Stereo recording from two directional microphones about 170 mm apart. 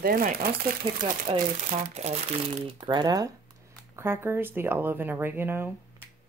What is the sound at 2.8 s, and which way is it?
Speech, 25° right (ahead or behind).